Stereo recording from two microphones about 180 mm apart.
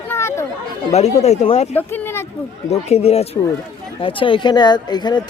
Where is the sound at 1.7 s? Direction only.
10° left (ahead or behind).